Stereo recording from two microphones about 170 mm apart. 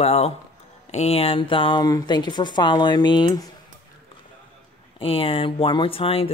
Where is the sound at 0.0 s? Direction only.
40° left (ahead or behind).